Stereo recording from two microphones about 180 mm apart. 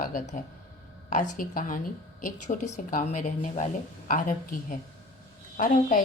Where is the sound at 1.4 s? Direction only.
50° left (ahead or behind).